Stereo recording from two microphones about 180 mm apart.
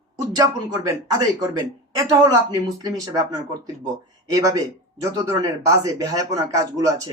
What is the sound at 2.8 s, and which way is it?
Speech, 20° right (ahead or behind).